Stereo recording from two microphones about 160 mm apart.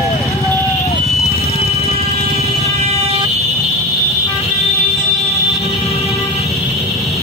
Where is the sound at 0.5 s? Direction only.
20° left (ahead or behind).